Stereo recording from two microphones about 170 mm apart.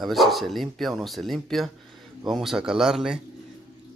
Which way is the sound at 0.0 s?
Centre (ahead or behind).